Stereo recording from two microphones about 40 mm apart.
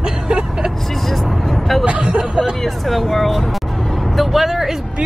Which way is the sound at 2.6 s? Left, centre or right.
Centre.